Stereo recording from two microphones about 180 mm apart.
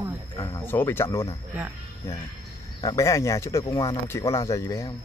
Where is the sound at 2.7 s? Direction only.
20° left (ahead or behind).